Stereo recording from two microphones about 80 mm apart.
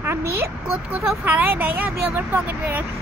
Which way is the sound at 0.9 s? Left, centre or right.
Right.